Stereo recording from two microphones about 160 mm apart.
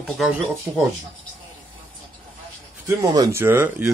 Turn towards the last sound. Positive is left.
turn(degrees=-15)  # may be behind; listen again after turning